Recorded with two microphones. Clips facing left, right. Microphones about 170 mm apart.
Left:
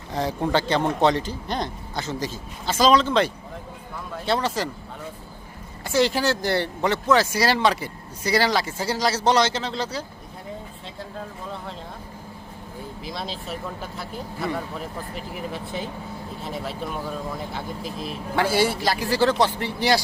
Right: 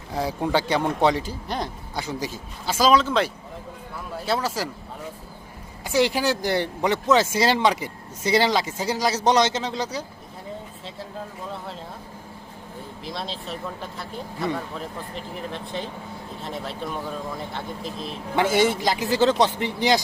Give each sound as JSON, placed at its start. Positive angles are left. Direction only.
{"t": 0.1, "sound": "speech", "side_deg": -10}
{"t": 5.8, "sound": "speech", "side_deg": -15}
{"t": 13.1, "sound": "speech", "side_deg": 0}
{"t": 18.3, "sound": "a man's voice", "side_deg": -20}